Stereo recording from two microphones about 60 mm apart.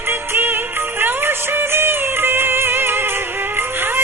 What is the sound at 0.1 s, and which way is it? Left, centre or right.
Music, right.